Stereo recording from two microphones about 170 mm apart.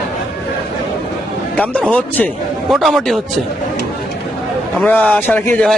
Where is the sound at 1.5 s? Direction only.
5° left (ahead or behind).